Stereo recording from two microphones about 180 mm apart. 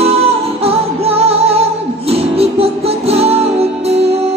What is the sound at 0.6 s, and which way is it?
Music, 35° right (ahead or behind).